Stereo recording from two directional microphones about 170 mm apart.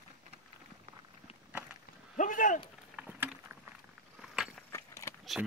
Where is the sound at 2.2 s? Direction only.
50° left (ahead or behind).